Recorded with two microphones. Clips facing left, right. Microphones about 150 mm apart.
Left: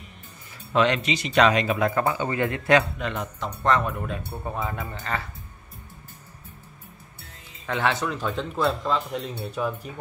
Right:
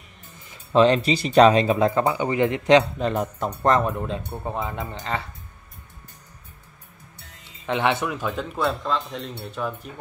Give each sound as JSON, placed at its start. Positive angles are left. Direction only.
{"t": 0.7, "sound": "speech", "side_deg": -35}
{"t": 3.0, "sound": "speech", "side_deg": -35}
{"t": 4.6, "sound": "speech", "side_deg": -20}
{"t": 7.6, "sound": "speech", "side_deg": -20}